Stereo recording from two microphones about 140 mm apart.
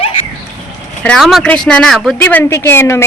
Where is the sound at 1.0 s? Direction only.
10° left (ahead or behind).